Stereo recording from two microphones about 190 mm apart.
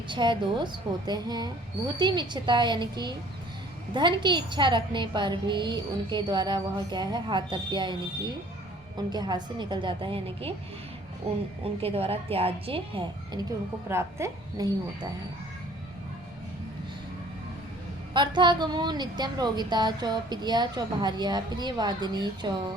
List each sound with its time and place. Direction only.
0.1 s a woman's voice: 25° right (ahead or behind)
9.0 s a woman's voice: 20° right (ahead or behind)
11.6 s a woman's voice: 30° right (ahead or behind)
13.8 s speech: 15° right (ahead or behind)
18.1 s a woman's voice: 25° right (ahead or behind)